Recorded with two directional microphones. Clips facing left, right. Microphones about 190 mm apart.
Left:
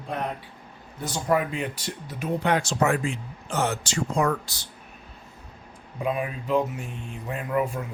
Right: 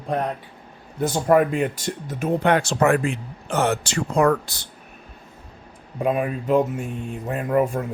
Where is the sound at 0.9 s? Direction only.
55° right (ahead or behind).